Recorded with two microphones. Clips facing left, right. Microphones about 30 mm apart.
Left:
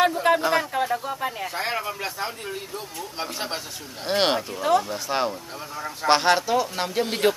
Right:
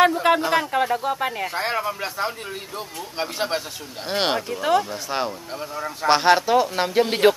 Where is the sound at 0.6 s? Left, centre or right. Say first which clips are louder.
Right 3 dB; right.